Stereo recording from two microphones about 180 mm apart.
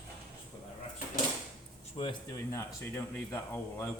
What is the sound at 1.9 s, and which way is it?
Speech, 25° left (ahead or behind).